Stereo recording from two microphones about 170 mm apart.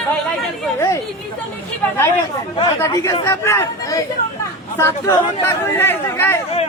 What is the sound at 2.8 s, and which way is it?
Speech, 20° left (ahead or behind).